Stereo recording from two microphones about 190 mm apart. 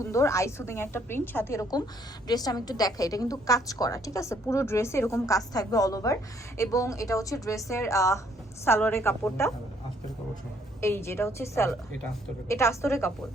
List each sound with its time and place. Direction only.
0.0 s a woman's voice: 15° left (ahead or behind)
10.8 s a woman's voice: 15° left (ahead or behind)